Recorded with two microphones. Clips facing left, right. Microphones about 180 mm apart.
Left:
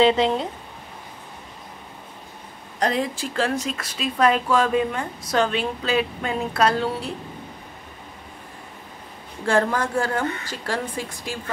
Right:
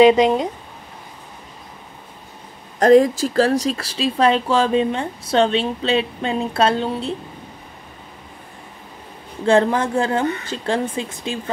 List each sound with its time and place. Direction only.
0.0 s speech: 15° right (ahead or behind)
2.8 s speech: 45° right (ahead or behind); by 7.2 s 25° right (ahead or behind)
9.4 s speech: 20° right (ahead or behind)